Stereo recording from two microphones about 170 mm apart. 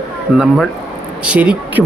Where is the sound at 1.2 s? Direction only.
10° right (ahead or behind).